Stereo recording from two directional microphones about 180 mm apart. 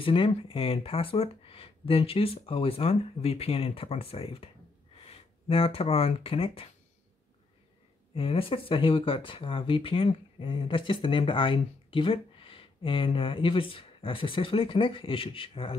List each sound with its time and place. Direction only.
0.0 s speech: 30° left (ahead or behind)
8.1 s speech: 30° left (ahead or behind)